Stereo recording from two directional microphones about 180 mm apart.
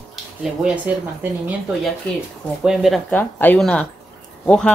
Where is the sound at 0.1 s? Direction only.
5° right (ahead or behind).